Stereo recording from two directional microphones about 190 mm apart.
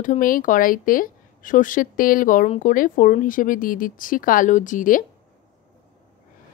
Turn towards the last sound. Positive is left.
turn(degrees=45)  # may be behind; listen again after turning